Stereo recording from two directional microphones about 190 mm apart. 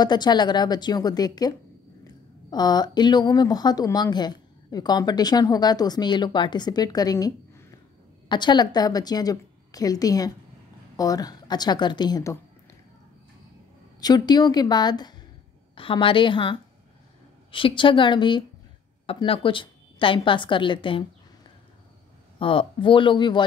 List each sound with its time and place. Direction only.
0.0 s speech: 20° left (ahead or behind)
2.5 s speech: 20° left (ahead or behind)
14.0 s speech: 20° left (ahead or behind)
22.4 s speech: 30° left (ahead or behind)